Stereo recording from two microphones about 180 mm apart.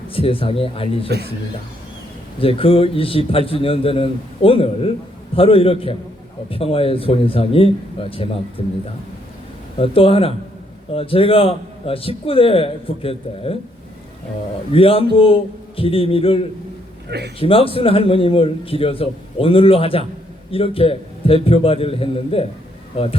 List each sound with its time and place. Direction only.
0.1 s a man's voice: 30° left (ahead or behind)
2.4 s a man's voice: 30° left (ahead or behind)
9.7 s a man's voice: 30° left (ahead or behind)
14.7 s a man's voice: 30° left (ahead or behind)
17.1 s a man's voice: 65° right (ahead or behind)
17.4 s a man's voice: 30° left (ahead or behind)